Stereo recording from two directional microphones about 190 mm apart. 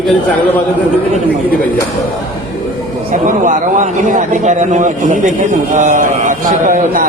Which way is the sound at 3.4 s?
40° right (ahead or behind).